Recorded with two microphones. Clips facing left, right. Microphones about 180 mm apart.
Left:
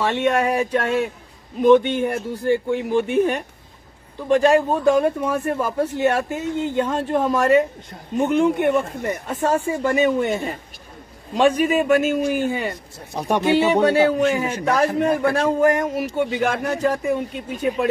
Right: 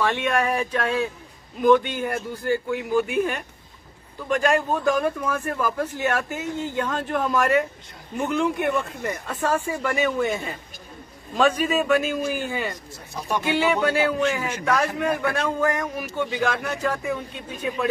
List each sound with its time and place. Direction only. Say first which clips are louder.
0.0 s a man's voice: left 3 dB; 25° left (ahead or behind)
4.6 s a man's voice: left 5 dB; 25° left (ahead or behind)
16.6 s speech: left 5 dB; 35° left (ahead or behind)